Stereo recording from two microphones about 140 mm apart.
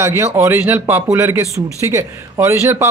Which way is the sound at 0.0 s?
20° right (ahead or behind).